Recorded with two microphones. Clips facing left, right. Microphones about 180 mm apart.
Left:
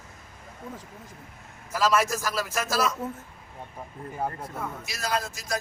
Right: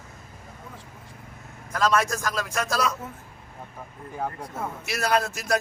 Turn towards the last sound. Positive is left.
turn(degrees=-65)  # may be behind; listen again after turning